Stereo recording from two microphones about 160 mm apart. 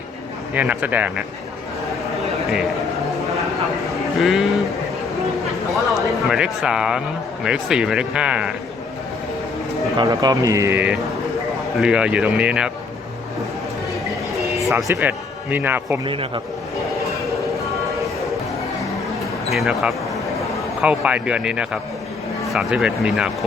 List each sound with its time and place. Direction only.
0.5 s speech: 10° right (ahead or behind)
3.8 s a sound: centre (ahead or behind)
5.7 s speech: centre (ahead or behind)
10.0 s speech: 25° right (ahead or behind); by 12.7 s 5° right (ahead or behind)
14.9 s a man's voice: 10° right (ahead or behind)
16.0 s a man's voice: 35° right (ahead or behind)
19.5 s speech: 5° right (ahead or behind)